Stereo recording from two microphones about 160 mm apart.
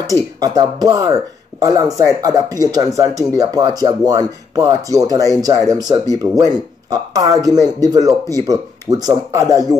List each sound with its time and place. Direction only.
0.0 s speech: 20° right (ahead or behind)